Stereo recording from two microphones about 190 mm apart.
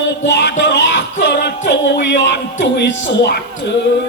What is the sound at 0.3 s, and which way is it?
Music, 60° left (ahead or behind).